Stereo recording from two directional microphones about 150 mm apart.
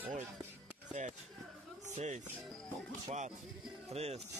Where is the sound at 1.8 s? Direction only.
50° right (ahead or behind).